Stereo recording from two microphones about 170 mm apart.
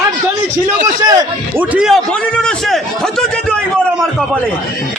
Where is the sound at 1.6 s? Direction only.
5° right (ahead or behind).